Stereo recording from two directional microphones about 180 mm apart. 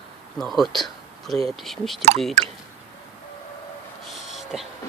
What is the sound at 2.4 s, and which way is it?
Speech, 40° right (ahead or behind).